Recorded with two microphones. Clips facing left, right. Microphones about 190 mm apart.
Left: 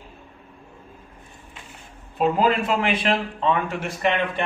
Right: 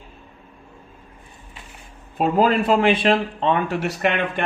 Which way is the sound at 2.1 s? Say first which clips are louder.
Right 2 dB; 40° right (ahead or behind).